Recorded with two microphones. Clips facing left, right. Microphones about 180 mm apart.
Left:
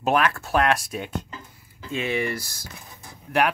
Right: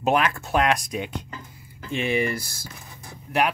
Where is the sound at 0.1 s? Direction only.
15° right (ahead or behind).